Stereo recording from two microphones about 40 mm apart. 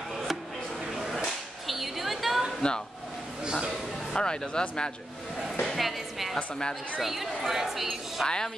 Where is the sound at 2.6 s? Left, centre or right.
Left.